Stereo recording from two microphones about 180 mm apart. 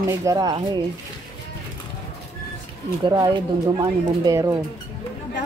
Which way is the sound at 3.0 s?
25° right (ahead or behind).